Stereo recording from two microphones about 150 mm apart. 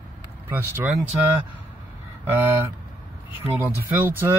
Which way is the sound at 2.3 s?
15° right (ahead or behind).